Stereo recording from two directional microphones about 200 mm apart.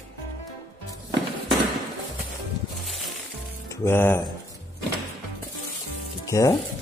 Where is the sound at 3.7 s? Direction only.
10° left (ahead or behind).